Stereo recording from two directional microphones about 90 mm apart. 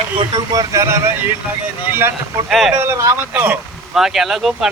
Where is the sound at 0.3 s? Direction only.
50° right (ahead or behind).